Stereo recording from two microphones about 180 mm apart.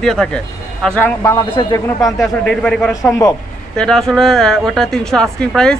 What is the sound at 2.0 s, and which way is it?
A man's voice, centre (ahead or behind).